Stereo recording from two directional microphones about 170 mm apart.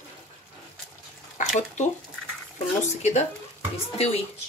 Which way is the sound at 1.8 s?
45° left (ahead or behind).